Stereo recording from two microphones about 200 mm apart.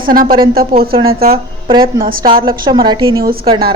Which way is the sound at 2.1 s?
45° right (ahead or behind).